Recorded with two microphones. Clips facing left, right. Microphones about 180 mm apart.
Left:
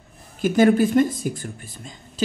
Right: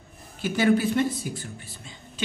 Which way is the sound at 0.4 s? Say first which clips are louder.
Left 6 dB; 50° left (ahead or behind).